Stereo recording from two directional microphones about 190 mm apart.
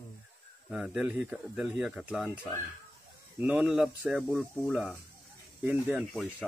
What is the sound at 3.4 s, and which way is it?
Speech, 10° right (ahead or behind).